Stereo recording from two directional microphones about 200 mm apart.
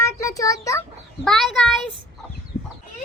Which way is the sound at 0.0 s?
15° left (ahead or behind).